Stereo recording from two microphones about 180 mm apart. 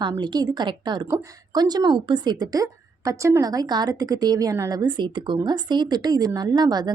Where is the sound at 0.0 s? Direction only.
25° right (ahead or behind).